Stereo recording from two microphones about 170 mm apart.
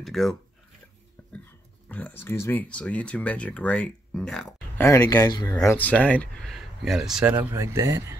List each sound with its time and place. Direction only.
0.0 s speech: centre (ahead or behind)
1.9 s speech: 10° left (ahead or behind); by 8.2 s 15° right (ahead or behind)